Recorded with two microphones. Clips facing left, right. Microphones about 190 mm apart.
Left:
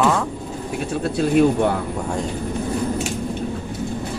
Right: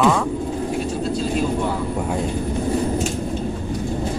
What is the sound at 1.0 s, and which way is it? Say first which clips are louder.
Speech: left 9 dB; 65° left (ahead or behind).